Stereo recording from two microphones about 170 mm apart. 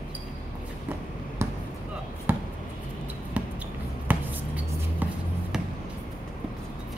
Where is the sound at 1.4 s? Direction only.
15° right (ahead or behind).